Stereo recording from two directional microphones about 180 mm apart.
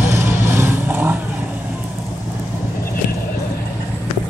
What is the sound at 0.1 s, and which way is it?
Vehicle, 15° right (ahead or behind).